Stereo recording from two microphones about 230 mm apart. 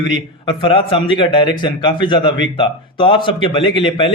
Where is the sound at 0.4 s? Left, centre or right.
Left.